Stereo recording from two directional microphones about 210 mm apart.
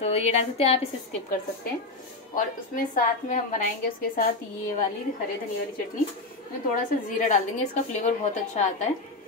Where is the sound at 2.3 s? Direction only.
40° left (ahead or behind).